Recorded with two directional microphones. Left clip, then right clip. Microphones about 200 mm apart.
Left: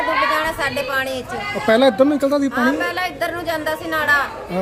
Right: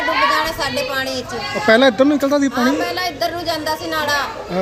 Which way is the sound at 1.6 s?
Centre (ahead or behind).